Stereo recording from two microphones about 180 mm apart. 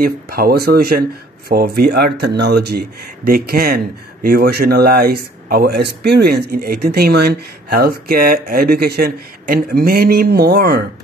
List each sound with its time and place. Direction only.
0.0 s speech: 55° right (ahead or behind)